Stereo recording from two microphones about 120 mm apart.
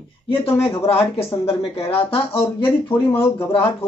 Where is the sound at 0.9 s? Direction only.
55° left (ahead or behind).